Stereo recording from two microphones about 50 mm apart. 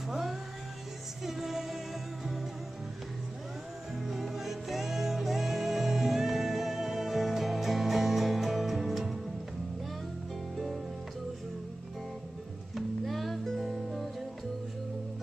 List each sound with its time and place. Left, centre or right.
0.1 s music: centre
3.9 s music: centre
10.5 s music: centre
12.7 s music: centre